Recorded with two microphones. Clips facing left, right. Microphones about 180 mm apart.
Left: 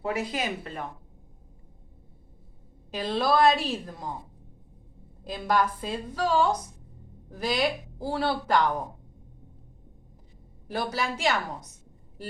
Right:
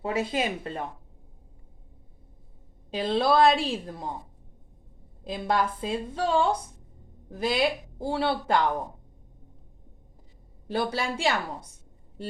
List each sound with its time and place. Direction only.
0.0 s a woman's voice: 25° right (ahead or behind)
2.9 s a woman's voice: 25° right (ahead or behind)
5.2 s a woman's voice: 25° right (ahead or behind)
10.7 s a woman's voice: 30° right (ahead or behind)